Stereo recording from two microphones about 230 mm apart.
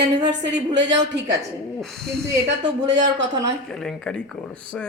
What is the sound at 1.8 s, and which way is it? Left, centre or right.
Speech, centre.